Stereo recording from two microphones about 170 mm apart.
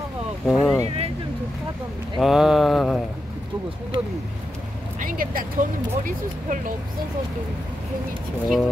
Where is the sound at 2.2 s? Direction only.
Centre (ahead or behind).